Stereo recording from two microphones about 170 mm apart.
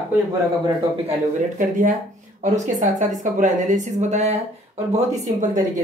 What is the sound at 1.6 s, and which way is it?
Speech, 50° right (ahead or behind).